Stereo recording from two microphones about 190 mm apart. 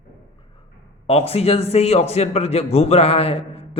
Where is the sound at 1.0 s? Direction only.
30° left (ahead or behind).